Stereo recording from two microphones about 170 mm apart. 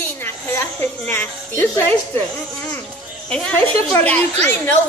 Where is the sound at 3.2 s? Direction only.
5° left (ahead or behind).